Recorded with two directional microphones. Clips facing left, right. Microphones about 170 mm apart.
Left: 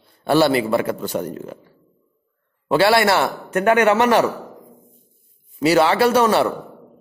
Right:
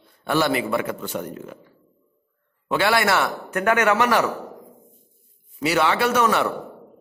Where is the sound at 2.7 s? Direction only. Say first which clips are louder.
Left 5 dB; 35° left (ahead or behind).